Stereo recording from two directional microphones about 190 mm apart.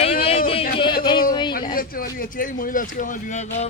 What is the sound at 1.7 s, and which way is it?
Speech, 50° left (ahead or behind).